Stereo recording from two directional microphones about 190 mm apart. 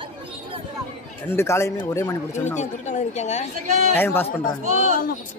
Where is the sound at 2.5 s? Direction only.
40° left (ahead or behind).